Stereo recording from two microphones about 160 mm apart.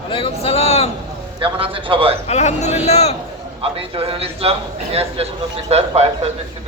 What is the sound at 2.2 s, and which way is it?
Speech, 45° left (ahead or behind).